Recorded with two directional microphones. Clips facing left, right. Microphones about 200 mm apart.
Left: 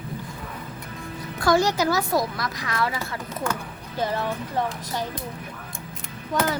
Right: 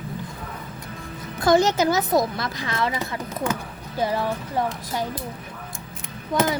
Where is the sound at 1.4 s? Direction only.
20° right (ahead or behind).